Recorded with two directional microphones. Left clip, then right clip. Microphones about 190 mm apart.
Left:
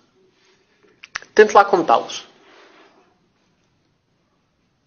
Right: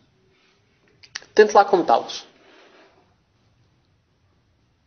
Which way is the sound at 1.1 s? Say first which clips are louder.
Left 3 dB; 25° right (ahead or behind).